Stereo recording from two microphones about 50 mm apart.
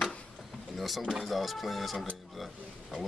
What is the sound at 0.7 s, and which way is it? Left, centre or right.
A man's voice, centre.